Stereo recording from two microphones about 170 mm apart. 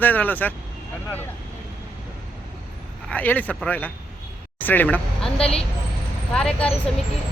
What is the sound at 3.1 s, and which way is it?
Speech, 10° left (ahead or behind).